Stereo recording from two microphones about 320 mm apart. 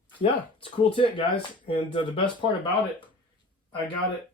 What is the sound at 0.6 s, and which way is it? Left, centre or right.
Speech, centre.